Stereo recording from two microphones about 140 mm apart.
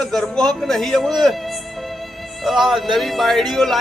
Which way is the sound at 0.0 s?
Centre (ahead or behind).